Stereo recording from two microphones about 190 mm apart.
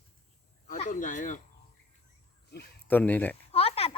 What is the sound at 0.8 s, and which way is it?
Speech, 45° left (ahead or behind).